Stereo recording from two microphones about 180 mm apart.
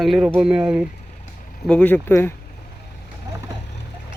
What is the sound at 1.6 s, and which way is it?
Speech, 5° left (ahead or behind).